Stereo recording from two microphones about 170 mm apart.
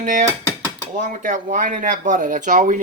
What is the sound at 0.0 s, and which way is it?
A man's voice, 50° right (ahead or behind).